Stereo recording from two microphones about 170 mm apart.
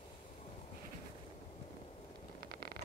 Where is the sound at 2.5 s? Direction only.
65° right (ahead or behind).